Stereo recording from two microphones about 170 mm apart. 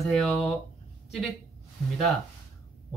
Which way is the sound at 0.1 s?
Centre (ahead or behind).